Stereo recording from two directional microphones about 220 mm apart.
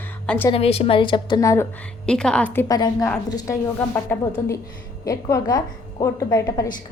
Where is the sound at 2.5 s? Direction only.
15° left (ahead or behind).